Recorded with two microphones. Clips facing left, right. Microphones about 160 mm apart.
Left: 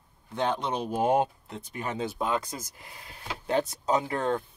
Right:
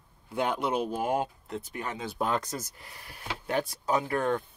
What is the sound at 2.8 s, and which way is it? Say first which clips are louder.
Speech: even; 20° left (ahead or behind).